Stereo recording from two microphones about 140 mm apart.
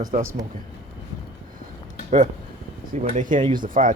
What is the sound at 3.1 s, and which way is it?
Speech, 70° right (ahead or behind).